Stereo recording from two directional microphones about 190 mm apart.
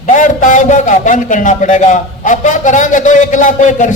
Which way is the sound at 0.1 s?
40° left (ahead or behind).